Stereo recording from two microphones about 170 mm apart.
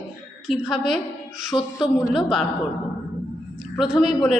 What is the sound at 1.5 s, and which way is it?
Speech, 30° left (ahead or behind).